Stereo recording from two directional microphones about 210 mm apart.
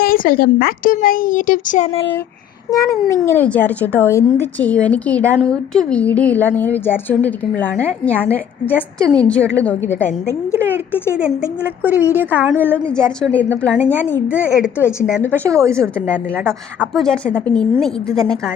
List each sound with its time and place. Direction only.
0.0 s speech: 45° left (ahead or behind)
2.6 s a woman's voice: 15° left (ahead or behind)
11.2 s a woman's voice: 5° right (ahead or behind)
12.5 s a woman's voice: 10° left (ahead or behind)
15.4 s a woman's voice: 15° right (ahead or behind)
16.8 s a woman's voice: 5° left (ahead or behind)